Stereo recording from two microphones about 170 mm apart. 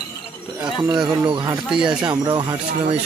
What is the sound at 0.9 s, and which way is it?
Speech, 25° right (ahead or behind).